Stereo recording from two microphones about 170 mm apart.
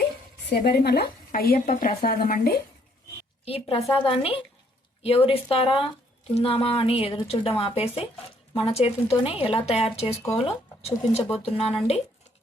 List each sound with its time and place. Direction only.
0.5 s a woman's voice: 70° left (ahead or behind)
3.4 s a woman's voice: 35° left (ahead or behind)